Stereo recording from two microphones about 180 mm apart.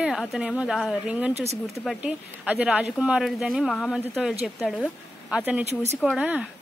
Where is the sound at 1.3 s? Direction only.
35° right (ahead or behind).